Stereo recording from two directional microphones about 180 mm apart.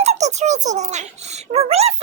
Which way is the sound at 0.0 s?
40° right (ahead or behind).